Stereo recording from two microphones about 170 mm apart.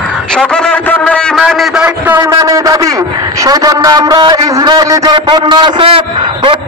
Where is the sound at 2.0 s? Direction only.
15° right (ahead or behind); by 6.6 s 30° right (ahead or behind).